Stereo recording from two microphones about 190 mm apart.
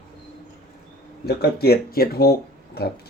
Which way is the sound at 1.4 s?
55° left (ahead or behind).